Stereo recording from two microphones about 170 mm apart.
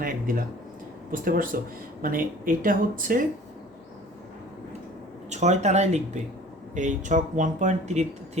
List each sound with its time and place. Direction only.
0.0 s speech: 55° right (ahead or behind)
5.3 s speech: 40° right (ahead or behind)